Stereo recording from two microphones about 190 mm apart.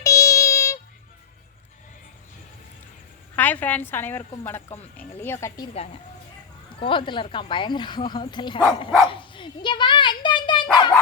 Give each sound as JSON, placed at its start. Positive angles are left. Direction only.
{"t": 0.0, "sound": "a sound", "side_deg": 15}
{"t": 3.3, "sound": "a woman's voice", "side_deg": 10}
{"t": 6.7, "sound": "a woman's voice", "side_deg": 25}
{"t": 9.0, "sound": "dog", "side_deg": 25}